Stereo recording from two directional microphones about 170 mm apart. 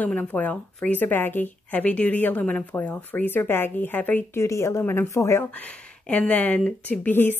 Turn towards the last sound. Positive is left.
turn(degrees=10)  # may be behind; listen again after turning